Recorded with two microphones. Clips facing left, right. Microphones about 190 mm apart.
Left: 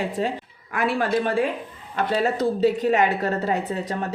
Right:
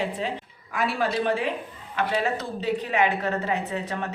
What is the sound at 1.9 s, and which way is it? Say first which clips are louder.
A woman's voice: left 3 dB; 40° left (ahead or behind).